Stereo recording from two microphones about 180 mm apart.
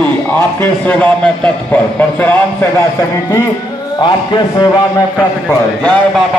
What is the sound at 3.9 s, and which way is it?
A man's voice, 25° left (ahead or behind).